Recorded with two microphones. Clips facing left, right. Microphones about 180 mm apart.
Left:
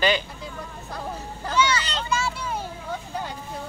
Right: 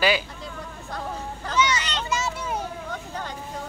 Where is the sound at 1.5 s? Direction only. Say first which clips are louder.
Left 1 dB; 20° right (ahead or behind).